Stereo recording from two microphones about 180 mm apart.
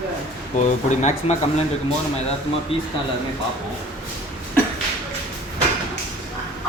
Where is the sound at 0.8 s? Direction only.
40° left (ahead or behind).